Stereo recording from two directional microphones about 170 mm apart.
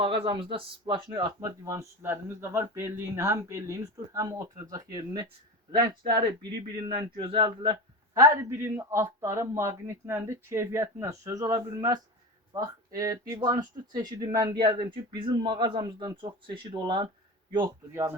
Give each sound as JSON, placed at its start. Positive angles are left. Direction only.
{"t": 0.2, "sound": "speech", "side_deg": -30}
{"t": 8.2, "sound": "speech", "side_deg": -15}
{"t": 17.9, "sound": "speech", "side_deg": -15}